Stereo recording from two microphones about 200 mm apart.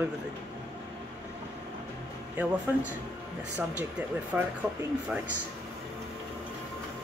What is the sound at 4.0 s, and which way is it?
Speech, 5° right (ahead or behind).